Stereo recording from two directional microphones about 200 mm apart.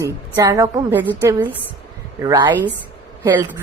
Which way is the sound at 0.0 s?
20° right (ahead or behind).